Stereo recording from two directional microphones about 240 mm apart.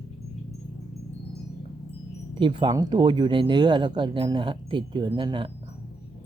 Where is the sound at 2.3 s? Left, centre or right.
Centre.